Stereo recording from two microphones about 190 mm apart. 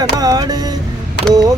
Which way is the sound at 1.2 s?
65° left (ahead or behind).